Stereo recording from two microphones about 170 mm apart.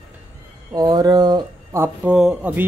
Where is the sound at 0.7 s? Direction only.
20° right (ahead or behind).